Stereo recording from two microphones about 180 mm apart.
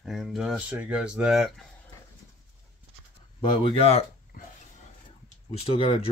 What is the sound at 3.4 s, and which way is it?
Speech, 30° left (ahead or behind).